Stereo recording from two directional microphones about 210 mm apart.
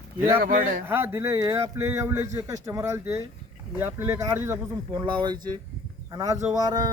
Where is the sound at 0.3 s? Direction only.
40° right (ahead or behind).